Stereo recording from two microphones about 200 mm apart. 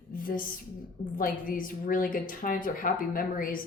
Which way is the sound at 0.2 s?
45° left (ahead or behind).